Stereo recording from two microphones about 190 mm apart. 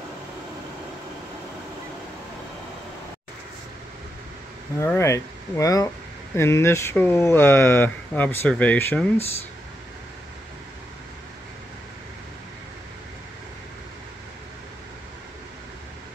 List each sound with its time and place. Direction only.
4.7 s speech: 15° left (ahead or behind)